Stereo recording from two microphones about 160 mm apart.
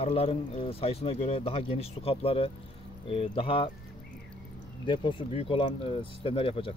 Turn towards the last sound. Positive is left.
turn(degrees=35)  # may be behind; listen again after turning